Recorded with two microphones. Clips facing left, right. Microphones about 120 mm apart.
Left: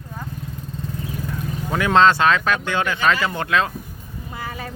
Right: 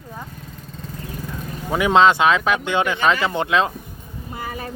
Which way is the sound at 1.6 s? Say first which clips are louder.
Right 1 dB; 15° right (ahead or behind).